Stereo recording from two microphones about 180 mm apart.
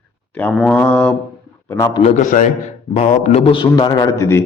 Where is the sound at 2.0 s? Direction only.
45° left (ahead or behind).